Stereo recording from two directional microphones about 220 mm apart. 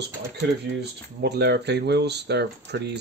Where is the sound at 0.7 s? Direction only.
50° right (ahead or behind).